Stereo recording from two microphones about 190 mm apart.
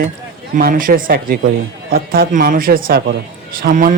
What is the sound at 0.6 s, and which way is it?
A man's voice, 45° right (ahead or behind).